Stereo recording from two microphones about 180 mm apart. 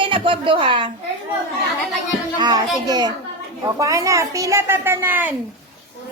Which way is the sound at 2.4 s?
20° right (ahead or behind).